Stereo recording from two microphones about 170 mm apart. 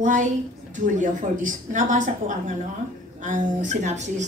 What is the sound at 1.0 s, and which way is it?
Speech, 50° right (ahead or behind).